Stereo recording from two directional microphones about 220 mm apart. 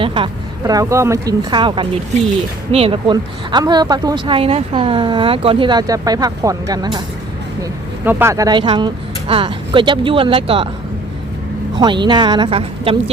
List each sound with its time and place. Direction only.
0.0 s speech: 20° right (ahead or behind)
8.0 s speech: 10° right (ahead or behind)
11.8 s speech: 20° right (ahead or behind)